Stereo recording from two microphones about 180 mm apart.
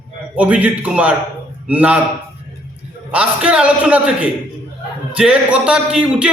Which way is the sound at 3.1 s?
5° right (ahead or behind).